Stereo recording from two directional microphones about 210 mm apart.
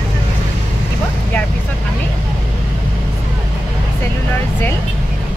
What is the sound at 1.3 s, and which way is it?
Vehicle, 10° left (ahead or behind).